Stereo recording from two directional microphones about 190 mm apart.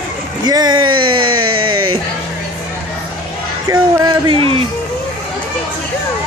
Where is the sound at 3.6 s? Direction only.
20° right (ahead or behind).